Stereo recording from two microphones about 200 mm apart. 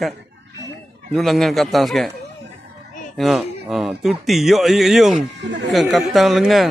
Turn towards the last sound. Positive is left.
turn(degrees=0)  # may be behind; listen again after turning